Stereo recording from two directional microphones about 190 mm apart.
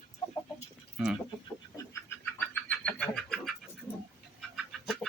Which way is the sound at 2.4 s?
5° left (ahead or behind).